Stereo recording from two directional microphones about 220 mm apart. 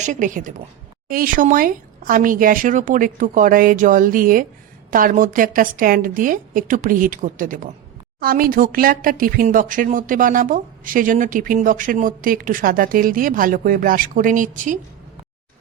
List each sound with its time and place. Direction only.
0.0 s speech: 35° right (ahead or behind)